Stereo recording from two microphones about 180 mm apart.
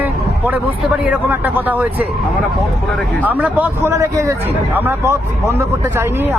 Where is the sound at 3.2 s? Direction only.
10° right (ahead or behind).